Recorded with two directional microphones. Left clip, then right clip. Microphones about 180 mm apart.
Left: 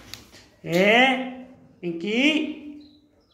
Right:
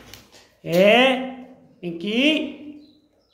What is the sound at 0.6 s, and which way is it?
Speech, 25° right (ahead or behind).